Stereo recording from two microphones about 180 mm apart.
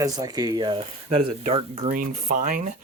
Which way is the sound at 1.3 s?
35° right (ahead or behind).